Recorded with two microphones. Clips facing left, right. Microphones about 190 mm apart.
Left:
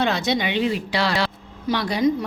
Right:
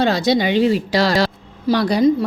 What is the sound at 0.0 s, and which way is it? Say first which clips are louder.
A woman's voice: right 6 dB; 35° right (ahead or behind).